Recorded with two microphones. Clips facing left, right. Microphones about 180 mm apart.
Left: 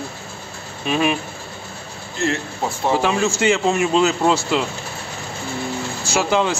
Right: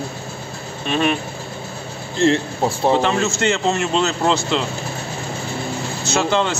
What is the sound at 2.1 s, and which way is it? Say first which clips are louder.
Speech: right 6 dB; 30° right (ahead or behind).